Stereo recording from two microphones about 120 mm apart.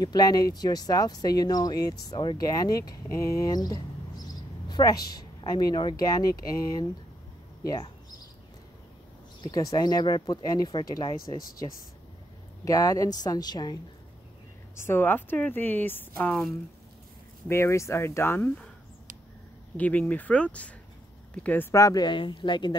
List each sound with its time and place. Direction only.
0.0 s a woman's voice: 35° left (ahead or behind)
9.4 s speech: 30° left (ahead or behind)
12.6 s speech: 30° left (ahead or behind)
14.8 s speech: 20° left (ahead or behind)
17.5 s speech: 20° left (ahead or behind)
19.8 s speech: 15° left (ahead or behind); by 22.8 s 40° left (ahead or behind)